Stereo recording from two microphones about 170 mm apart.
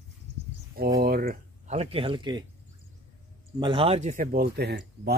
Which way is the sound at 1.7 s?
35° right (ahead or behind).